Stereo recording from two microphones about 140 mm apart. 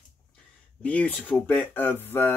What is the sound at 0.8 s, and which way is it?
Speech, 10° left (ahead or behind).